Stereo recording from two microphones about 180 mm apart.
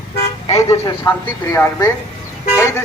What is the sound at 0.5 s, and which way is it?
Speech, 20° left (ahead or behind).